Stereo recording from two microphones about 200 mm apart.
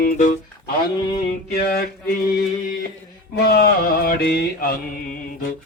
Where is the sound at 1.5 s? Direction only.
50° left (ahead or behind).